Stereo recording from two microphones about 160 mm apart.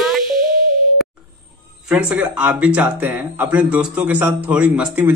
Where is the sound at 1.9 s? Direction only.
5° right (ahead or behind).